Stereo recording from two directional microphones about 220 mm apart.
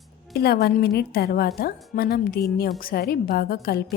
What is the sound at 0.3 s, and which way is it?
A woman's voice, 45° left (ahead or behind).